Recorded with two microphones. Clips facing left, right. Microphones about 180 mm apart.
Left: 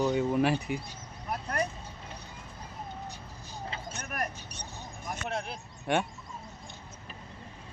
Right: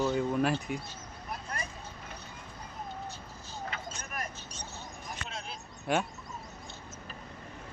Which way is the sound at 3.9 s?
60° left (ahead or behind).